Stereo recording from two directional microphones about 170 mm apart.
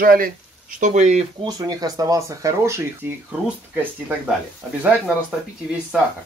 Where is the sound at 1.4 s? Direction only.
20° right (ahead or behind).